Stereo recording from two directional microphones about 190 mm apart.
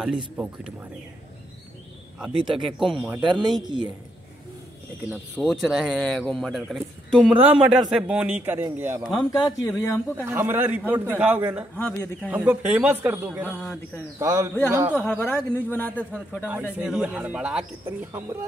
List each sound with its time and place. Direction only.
2.5 s a man's voice: centre (ahead or behind)
3.3 s speech: 20° right (ahead or behind)
5.3 s a man's voice: centre (ahead or behind)
9.0 s a man's voice: 5° left (ahead or behind)
9.3 s speech: 20° left (ahead or behind)
10.1 s a man's voice: 10° right (ahead or behind)
11.7 s speech: 10° left (ahead or behind)
12.3 s a man's voice: 10° right (ahead or behind)
15.0 s speech: 10° left (ahead or behind)
16.7 s a man's voice: 5° right (ahead or behind)